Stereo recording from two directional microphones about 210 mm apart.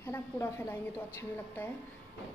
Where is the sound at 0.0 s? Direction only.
10° left (ahead or behind).